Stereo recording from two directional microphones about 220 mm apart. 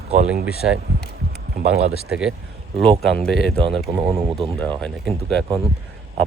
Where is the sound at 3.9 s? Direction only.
15° right (ahead or behind).